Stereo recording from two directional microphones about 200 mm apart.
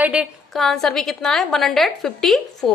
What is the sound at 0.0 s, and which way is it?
A woman's voice, 5° right (ahead or behind).